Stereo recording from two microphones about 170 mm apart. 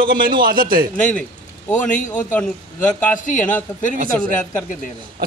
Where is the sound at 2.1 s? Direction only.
10° left (ahead or behind).